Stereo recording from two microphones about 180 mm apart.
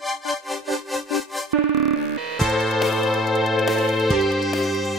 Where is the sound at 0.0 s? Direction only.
Centre (ahead or behind).